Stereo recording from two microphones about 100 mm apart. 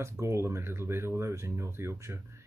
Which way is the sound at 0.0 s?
30° right (ahead or behind).